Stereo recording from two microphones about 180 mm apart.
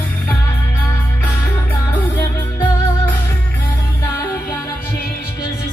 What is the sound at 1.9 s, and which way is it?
Music, 10° left (ahead or behind).